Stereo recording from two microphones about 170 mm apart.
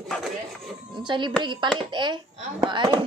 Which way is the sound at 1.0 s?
25° right (ahead or behind).